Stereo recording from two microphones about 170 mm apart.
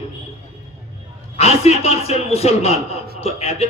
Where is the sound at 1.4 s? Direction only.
40° left (ahead or behind).